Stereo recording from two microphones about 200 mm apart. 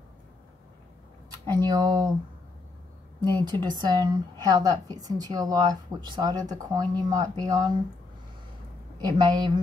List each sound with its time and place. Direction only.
1.4 s a woman's voice: 20° right (ahead or behind)
3.4 s a woman's voice: 20° right (ahead or behind)
9.0 s a woman's voice: 20° right (ahead or behind)